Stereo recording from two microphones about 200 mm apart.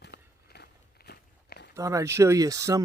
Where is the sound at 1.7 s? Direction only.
15° right (ahead or behind).